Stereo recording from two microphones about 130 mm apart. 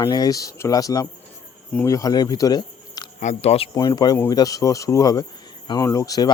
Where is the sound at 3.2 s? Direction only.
60° left (ahead or behind).